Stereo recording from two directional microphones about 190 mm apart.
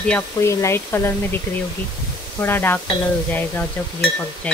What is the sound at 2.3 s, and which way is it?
Speech, 10° left (ahead or behind).